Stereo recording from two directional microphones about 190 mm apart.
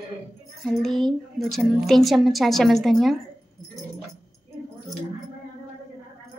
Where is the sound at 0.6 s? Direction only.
Centre (ahead or behind).